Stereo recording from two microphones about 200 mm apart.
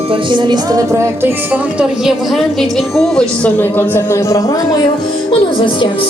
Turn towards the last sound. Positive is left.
turn(degrees=25)  # may be behind; listen again after turning